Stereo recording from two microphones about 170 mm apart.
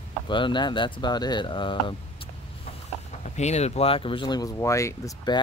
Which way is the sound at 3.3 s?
40° left (ahead or behind).